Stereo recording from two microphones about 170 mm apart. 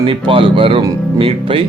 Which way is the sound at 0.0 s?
30° right (ahead or behind).